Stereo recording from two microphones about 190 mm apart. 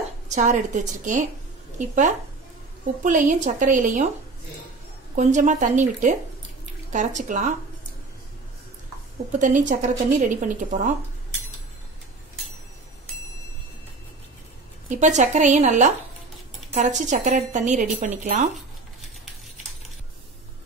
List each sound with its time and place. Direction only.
0.3 s speech: 40° right (ahead or behind)
5.1 s speech: 40° right (ahead or behind)
9.4 s speech: 40° right (ahead or behind)
14.9 s speech: 40° right (ahead or behind)